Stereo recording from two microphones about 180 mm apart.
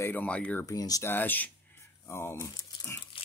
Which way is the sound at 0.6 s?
20° left (ahead or behind).